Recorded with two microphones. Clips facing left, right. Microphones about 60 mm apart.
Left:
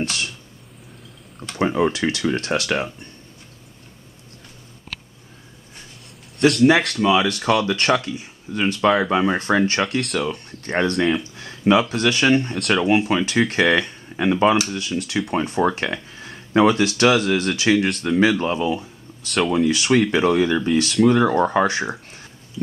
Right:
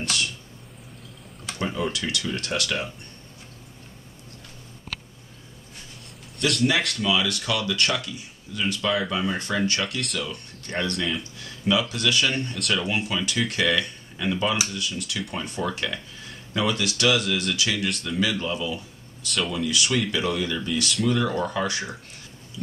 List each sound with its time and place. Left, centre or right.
0.0 s a sound: left
1.6 s speech: left
6.5 s speech: left
7.1 s speech: left
12.5 s speech: left
12.8 s speech: left